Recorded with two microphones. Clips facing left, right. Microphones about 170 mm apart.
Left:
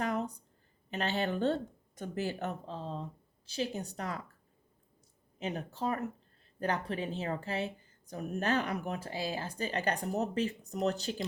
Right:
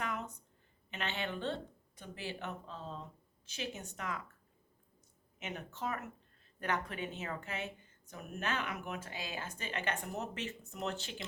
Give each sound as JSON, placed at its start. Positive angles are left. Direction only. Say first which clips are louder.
{"t": 0.0, "sound": "a sound", "louder": "left 7 dB", "side_deg": 35}
{"t": 0.9, "sound": "speech", "louder": "left 7 dB", "side_deg": 40}
{"t": 5.4, "sound": "speech", "louder": "left 6 dB", "side_deg": 35}